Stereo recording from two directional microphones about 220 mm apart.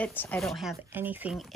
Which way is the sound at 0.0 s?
10° left (ahead or behind).